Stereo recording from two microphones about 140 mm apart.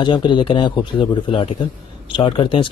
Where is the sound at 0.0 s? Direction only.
35° left (ahead or behind).